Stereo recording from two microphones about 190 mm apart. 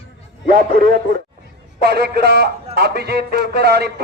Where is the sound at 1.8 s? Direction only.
55° right (ahead or behind).